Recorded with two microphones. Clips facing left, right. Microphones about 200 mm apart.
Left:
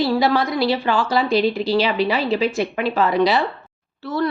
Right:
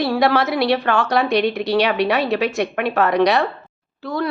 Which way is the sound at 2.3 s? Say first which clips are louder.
Even; 75° right (ahead or behind).